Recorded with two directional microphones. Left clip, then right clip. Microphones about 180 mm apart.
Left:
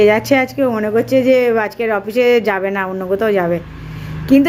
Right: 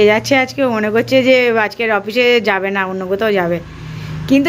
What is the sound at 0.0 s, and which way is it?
Speech, centre (ahead or behind).